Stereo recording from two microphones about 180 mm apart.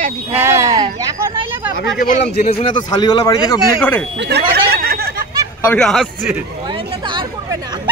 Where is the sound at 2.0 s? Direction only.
50° left (ahead or behind).